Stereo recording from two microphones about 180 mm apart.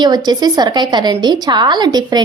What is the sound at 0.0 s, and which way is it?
A woman's voice, 25° right (ahead or behind).